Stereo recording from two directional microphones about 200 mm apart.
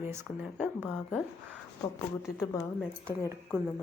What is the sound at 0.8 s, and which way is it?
Speech, 5° left (ahead or behind).